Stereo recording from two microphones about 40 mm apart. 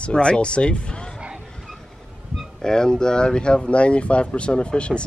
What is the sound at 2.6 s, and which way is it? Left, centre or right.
Speech, centre.